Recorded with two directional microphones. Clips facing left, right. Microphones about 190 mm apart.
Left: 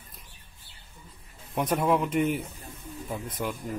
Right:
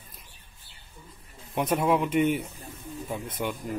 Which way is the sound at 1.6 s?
5° right (ahead or behind).